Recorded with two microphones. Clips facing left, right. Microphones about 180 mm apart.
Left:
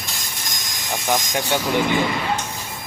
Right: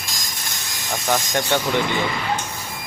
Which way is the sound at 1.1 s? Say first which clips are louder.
Right 1 dB; 15° left (ahead or behind).